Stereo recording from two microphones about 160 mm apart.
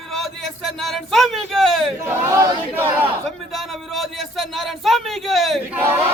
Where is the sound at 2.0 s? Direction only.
20° right (ahead or behind).